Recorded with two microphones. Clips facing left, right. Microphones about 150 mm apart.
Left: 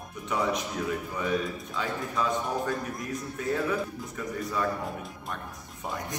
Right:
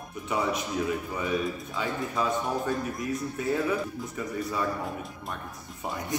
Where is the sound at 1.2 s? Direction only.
5° right (ahead or behind).